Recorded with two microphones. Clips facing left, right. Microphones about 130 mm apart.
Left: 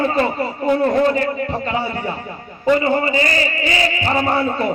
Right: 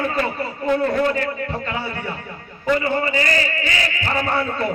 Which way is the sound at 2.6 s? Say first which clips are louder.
Left 4 dB; 20° left (ahead or behind).